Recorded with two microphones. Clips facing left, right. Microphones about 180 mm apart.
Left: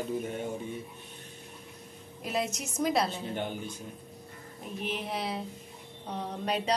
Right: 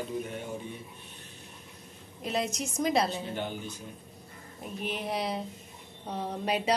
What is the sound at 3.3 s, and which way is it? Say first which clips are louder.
Speech: left 1 dB; 50° left (ahead or behind).